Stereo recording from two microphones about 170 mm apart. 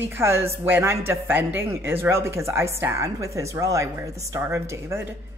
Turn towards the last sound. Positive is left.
turn(degrees=-15)  # may be behind; listen again after turning